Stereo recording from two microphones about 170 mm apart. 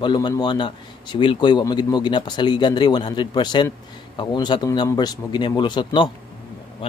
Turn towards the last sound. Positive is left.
turn(degrees=30)  # may be behind; listen again after turning